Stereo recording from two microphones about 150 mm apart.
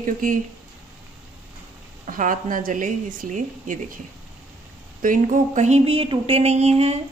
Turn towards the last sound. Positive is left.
turn(degrees=-45)  # may be behind; listen again after turning